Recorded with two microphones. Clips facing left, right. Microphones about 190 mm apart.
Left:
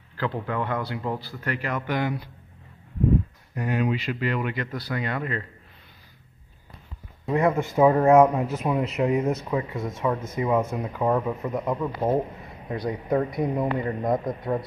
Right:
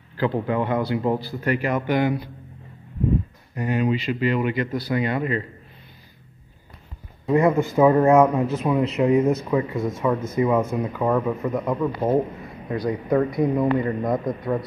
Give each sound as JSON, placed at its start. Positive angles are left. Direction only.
{"t": 0.2, "sound": "speech", "side_deg": -15}
{"t": 3.5, "sound": "speech", "side_deg": 0}
{"t": 7.2, "sound": "speech", "side_deg": 0}
{"t": 7.7, "sound": "speech", "side_deg": 10}
{"t": 12.6, "sound": "a man's voice", "side_deg": 20}